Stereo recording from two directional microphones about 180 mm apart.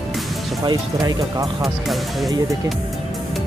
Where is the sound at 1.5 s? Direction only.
Centre (ahead or behind).